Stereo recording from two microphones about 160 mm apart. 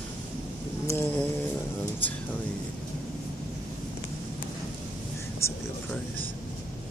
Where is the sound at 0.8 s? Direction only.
10° left (ahead or behind).